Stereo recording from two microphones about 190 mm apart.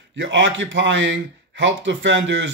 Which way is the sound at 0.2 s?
75° right (ahead or behind).